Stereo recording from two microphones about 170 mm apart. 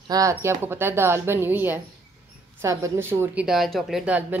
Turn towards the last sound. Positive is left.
turn(degrees=-5)  # may be behind; listen again after turning